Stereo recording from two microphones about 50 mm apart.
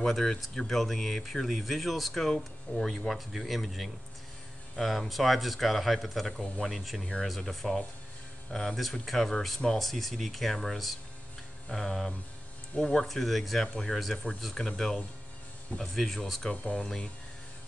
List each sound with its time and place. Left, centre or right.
0.0 s speech: centre
2.7 s speech: left
3.1 s speech: centre
14.1 s speech: centre
14.4 s speech: centre
16.6 s speech: centre